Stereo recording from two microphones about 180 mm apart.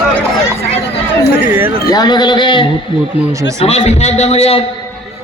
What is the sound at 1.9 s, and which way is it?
Speech, 25° left (ahead or behind).